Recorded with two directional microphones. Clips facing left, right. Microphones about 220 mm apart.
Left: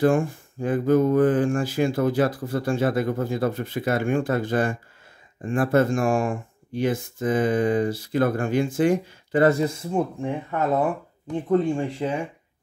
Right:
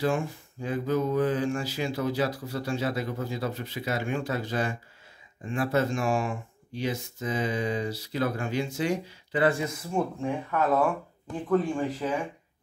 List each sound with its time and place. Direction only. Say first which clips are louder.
0.0 s speech: left 7 dB; 50° left (ahead or behind); by 9.8 s 35° left (ahead or behind)
9.8 s speech: left 3 dB; 20° left (ahead or behind)